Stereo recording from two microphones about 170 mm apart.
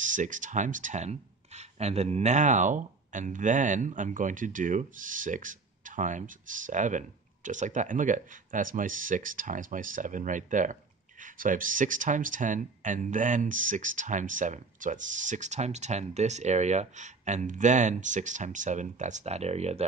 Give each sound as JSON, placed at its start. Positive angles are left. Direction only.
{"t": 0.0, "sound": "speech", "side_deg": -50}